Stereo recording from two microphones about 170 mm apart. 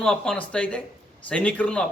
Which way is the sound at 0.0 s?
5° left (ahead or behind).